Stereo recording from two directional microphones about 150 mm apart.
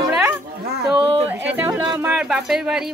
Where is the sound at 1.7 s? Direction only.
30° right (ahead or behind).